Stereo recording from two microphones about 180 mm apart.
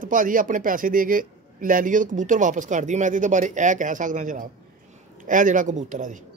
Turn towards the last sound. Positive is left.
turn(degrees=-45)  # may be behind; listen again after turning